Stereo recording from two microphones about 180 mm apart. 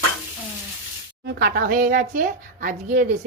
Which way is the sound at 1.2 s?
70° right (ahead or behind).